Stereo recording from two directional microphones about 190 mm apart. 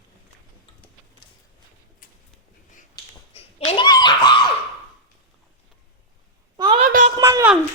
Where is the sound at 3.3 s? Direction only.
30° left (ahead or behind).